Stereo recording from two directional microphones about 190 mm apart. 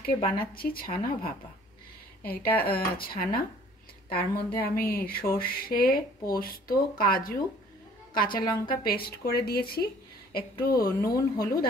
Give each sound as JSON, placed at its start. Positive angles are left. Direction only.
{"t": 0.0, "sound": "speech", "side_deg": 50}
{"t": 2.5, "sound": "speech", "side_deg": 50}
{"t": 10.8, "sound": "speech", "side_deg": 20}
{"t": 11.3, "sound": "speech", "side_deg": 50}